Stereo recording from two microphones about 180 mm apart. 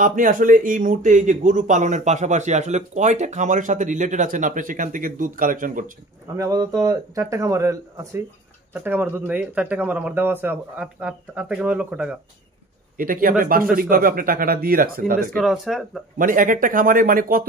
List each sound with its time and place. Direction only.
0.0 s speech: 50° right (ahead or behind)
6.3 s speech: 20° right (ahead or behind)
12.9 s speech: 50° right (ahead or behind)
15.3 s speech: centre (ahead or behind)
16.2 s speech: 50° right (ahead or behind)